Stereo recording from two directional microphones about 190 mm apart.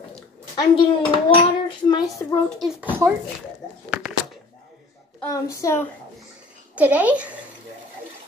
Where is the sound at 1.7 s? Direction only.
20° left (ahead or behind).